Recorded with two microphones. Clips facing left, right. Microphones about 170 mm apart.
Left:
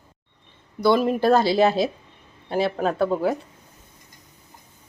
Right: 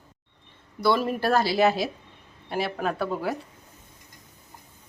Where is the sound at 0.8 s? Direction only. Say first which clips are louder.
Left 5 dB; 20° left (ahead or behind).